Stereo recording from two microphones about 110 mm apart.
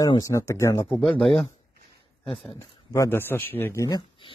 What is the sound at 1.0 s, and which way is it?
Speech, 5° left (ahead or behind).